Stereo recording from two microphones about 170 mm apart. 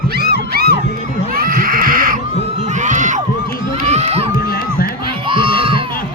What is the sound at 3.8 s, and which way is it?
Crowd, 40° right (ahead or behind).